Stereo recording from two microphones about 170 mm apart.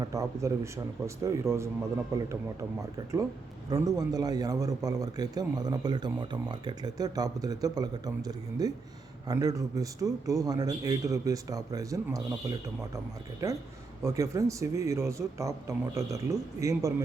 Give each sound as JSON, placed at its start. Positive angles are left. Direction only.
{"t": 0.0, "sound": "speech", "side_deg": -20}
{"t": 3.7, "sound": "a man's voice", "side_deg": -20}